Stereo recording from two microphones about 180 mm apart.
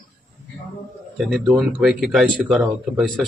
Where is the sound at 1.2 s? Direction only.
Centre (ahead or behind).